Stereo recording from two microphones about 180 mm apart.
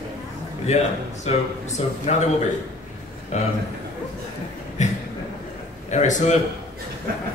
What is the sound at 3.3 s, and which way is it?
Speech, 40° left (ahead or behind).